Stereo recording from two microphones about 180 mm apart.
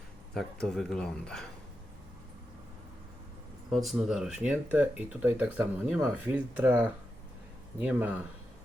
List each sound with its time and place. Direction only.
0.3 s speech: centre (ahead or behind)
3.7 s speech: centre (ahead or behind)